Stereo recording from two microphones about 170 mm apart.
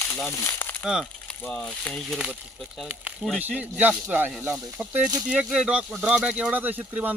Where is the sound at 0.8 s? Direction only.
5° right (ahead or behind).